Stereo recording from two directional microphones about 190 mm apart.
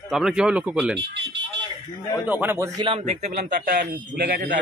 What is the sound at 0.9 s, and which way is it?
Speech, 65° right (ahead or behind).